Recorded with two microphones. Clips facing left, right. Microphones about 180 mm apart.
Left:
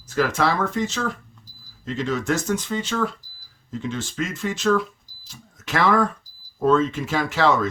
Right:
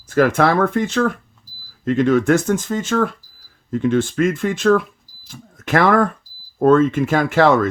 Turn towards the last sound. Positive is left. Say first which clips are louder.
# right 6 dB
turn(degrees=-55)  # may be behind; listen again after turning